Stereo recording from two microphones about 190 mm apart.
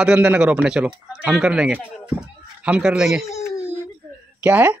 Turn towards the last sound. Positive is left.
turn(degrees=-10)  # may be behind; listen again after turning